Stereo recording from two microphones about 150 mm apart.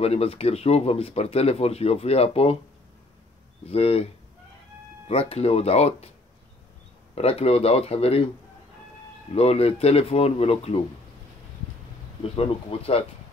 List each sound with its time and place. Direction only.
0.0 s speech: 40° left (ahead or behind)
3.6 s speech: 40° left (ahead or behind)
7.2 s speech: 40° left (ahead or behind)
9.3 s speech: 40° left (ahead or behind)
12.2 s speech: 40° left (ahead or behind)